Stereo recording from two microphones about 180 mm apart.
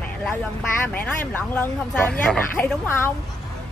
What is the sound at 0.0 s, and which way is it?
Vehicle, 10° left (ahead or behind).